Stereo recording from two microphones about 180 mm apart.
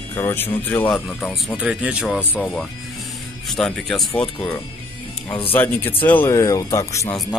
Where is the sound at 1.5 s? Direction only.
5° right (ahead or behind).